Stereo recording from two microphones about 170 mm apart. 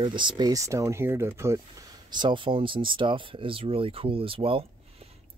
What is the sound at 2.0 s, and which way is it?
Speech, 30° right (ahead or behind).